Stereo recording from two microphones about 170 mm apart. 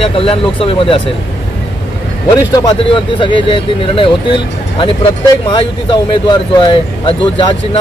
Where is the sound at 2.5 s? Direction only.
30° left (ahead or behind).